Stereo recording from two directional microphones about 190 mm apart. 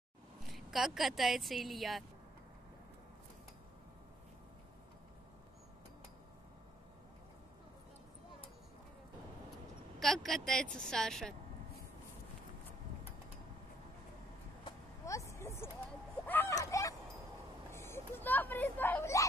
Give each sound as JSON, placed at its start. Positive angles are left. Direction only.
{"t": 0.6, "sound": "a woman's voice", "side_deg": 0}
{"t": 9.9, "sound": "a woman's voice", "side_deg": 0}
{"t": 15.0, "sound": "speech", "side_deg": 15}
{"t": 16.3, "sound": "a sound", "side_deg": 10}
{"t": 17.7, "sound": "speech", "side_deg": 15}